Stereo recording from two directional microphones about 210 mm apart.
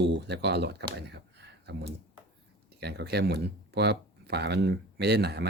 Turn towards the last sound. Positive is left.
turn(degrees=-50)  # may be behind; listen again after turning